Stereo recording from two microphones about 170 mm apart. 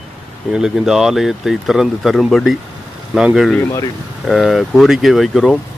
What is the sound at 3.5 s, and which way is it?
Speech, 15° left (ahead or behind).